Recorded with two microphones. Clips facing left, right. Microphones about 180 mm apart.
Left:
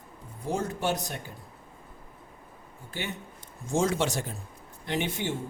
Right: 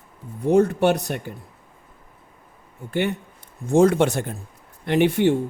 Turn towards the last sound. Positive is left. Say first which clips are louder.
# right 12 dB
turn(degrees=-65)  # may be behind; listen again after turning